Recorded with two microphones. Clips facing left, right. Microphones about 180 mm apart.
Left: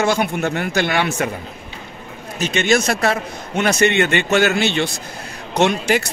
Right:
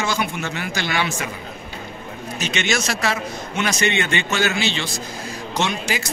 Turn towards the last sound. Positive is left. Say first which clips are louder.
# left 7 dB
turn(degrees=60)  # may be behind; listen again after turning